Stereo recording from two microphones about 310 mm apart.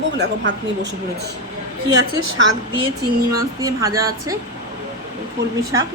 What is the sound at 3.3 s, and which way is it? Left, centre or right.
A woman's voice, centre.